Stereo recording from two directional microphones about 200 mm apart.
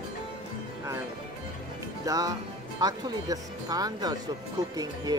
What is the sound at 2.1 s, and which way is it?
Speech, 20° right (ahead or behind).